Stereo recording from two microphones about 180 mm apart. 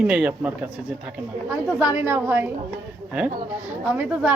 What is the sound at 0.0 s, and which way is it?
Speech, 5° right (ahead or behind).